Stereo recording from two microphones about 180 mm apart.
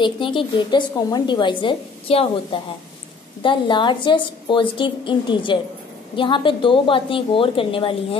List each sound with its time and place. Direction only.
0.0 s a woman's voice: 30° left (ahead or behind)